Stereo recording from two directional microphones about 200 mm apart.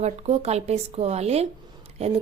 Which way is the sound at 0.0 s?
35° right (ahead or behind).